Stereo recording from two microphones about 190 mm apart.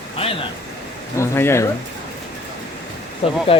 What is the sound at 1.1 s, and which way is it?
Speech, 15° left (ahead or behind).